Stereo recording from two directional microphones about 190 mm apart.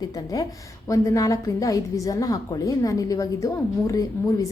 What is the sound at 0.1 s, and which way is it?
A woman's voice, 20° left (ahead or behind).